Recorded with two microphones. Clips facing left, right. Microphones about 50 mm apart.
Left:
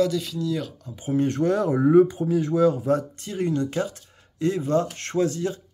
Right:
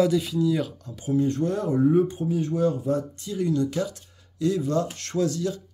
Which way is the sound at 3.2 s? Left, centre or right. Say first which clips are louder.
Even; left.